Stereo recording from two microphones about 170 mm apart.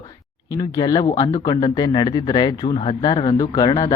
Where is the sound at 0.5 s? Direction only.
25° left (ahead or behind).